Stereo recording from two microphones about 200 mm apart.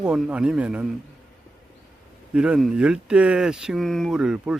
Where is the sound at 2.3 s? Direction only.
5° right (ahead or behind).